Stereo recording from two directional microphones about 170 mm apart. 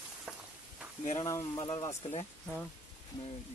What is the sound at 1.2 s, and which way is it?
Speech, 20° left (ahead or behind).